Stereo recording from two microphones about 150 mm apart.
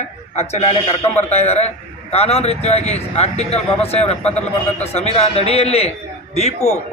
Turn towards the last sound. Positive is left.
turn(degrees=45)  # may be behind; listen again after turning